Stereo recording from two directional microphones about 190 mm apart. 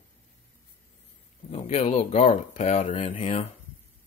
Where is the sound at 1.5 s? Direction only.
35° left (ahead or behind).